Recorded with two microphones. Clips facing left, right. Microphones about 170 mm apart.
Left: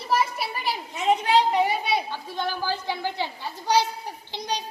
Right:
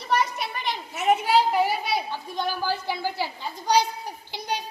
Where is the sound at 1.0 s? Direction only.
5° right (ahead or behind).